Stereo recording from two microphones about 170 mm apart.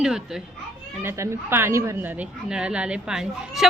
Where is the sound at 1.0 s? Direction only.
15° right (ahead or behind).